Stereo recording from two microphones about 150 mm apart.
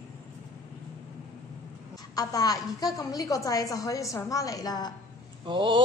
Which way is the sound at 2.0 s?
25° left (ahead or behind).